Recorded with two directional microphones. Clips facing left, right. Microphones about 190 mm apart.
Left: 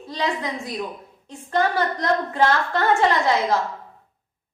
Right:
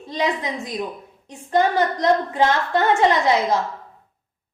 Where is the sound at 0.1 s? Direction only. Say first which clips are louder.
Right 2 dB; 20° right (ahead or behind).